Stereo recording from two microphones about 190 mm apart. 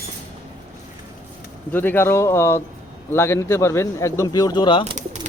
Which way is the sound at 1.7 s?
10° left (ahead or behind).